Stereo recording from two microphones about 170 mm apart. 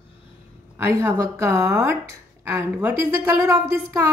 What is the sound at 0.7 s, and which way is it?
Speech, 15° right (ahead or behind).